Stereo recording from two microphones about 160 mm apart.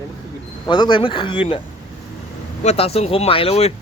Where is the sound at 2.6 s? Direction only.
40° left (ahead or behind).